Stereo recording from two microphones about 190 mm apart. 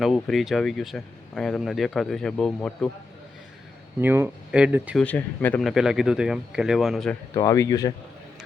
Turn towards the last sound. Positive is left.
turn(degrees=20)  # may be behind; listen again after turning